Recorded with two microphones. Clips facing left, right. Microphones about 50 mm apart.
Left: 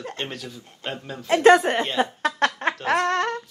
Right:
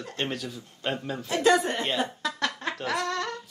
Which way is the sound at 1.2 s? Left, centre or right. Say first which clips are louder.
Left 7 dB; left.